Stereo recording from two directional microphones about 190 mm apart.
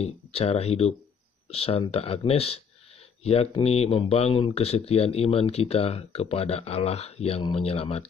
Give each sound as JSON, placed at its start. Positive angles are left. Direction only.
{"t": 0.0, "sound": "speech", "side_deg": 30}